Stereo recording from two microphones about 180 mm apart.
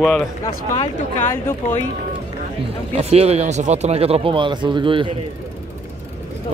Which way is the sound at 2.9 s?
35° right (ahead or behind).